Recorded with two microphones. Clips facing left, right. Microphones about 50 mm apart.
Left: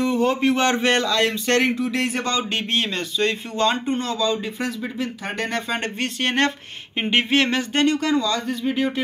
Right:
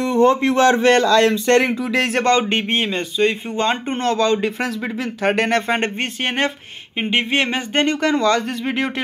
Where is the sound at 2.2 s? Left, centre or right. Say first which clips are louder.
Right 8 dB; right.